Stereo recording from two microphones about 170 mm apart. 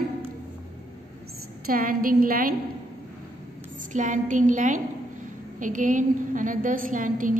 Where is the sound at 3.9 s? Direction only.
50° right (ahead or behind).